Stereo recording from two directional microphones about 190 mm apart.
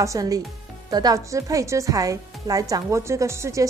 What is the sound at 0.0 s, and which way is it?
Speech, 15° right (ahead or behind).